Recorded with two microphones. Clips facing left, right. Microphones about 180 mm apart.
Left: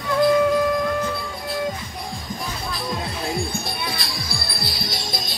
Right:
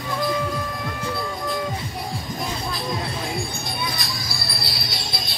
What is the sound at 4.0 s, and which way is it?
Music, 55° left (ahead or behind).